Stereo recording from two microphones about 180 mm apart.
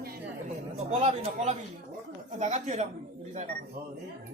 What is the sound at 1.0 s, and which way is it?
Speech, 35° right (ahead or behind).